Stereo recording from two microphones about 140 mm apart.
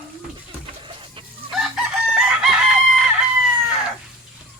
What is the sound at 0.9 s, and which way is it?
Chicken, 40° right (ahead or behind).